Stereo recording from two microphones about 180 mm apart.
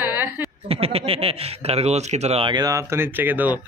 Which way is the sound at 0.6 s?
35° right (ahead or behind).